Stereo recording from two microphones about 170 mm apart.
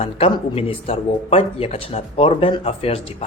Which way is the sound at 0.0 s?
35° left (ahead or behind).